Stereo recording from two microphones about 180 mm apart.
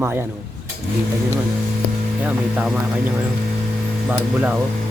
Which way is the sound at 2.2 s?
5° right (ahead or behind).